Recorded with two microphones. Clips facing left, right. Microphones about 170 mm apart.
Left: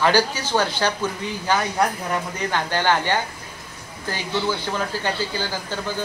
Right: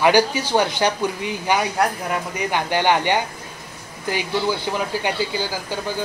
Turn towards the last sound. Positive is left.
turn(degrees=-15)  # may be behind; listen again after turning